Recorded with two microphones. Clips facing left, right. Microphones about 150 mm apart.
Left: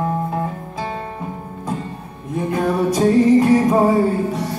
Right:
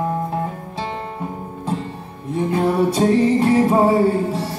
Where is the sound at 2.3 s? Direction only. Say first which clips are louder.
Right 1 dB; 25° right (ahead or behind).